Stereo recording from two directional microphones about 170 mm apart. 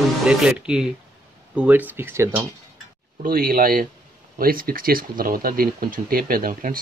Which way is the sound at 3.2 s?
60° right (ahead or behind).